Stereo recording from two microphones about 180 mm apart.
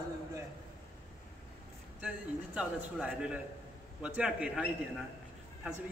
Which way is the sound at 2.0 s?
5° right (ahead or behind).